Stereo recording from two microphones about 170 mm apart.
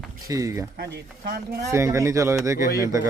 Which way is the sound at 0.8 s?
70° right (ahead or behind).